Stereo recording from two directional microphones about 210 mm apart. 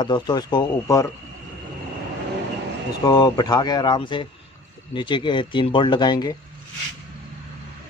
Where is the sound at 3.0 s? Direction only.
20° left (ahead or behind).